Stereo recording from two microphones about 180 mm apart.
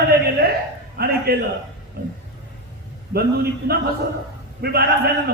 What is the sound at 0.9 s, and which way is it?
Speech, 60° right (ahead or behind).